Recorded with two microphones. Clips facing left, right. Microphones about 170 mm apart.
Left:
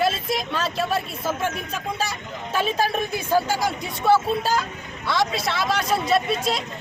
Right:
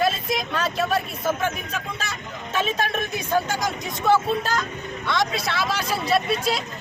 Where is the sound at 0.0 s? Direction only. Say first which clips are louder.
Even; centre (ahead or behind).